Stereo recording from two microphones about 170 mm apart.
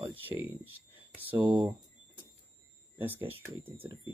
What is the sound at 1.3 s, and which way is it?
Speech, 30° right (ahead or behind).